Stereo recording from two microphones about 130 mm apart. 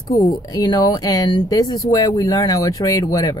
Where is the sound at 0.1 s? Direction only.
30° left (ahead or behind).